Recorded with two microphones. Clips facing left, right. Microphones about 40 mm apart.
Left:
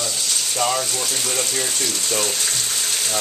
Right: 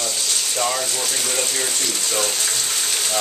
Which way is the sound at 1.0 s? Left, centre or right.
Centre.